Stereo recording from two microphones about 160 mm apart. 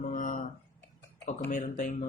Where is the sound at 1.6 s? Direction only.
55° left (ahead or behind).